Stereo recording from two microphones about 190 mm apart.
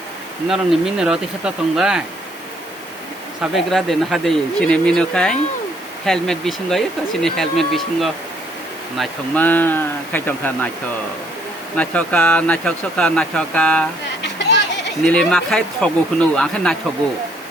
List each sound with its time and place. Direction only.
0.4 s speech: centre (ahead or behind)
3.5 s speech: centre (ahead or behind)
11.8 s speech: 5° left (ahead or behind)
14.3 s a sound: 70° left (ahead or behind)
15.0 s speech: 5° left (ahead or behind)